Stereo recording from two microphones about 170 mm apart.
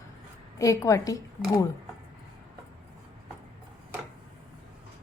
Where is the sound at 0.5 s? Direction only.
20° left (ahead or behind).